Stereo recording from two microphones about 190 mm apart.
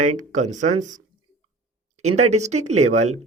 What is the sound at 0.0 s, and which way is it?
Speech, 40° right (ahead or behind).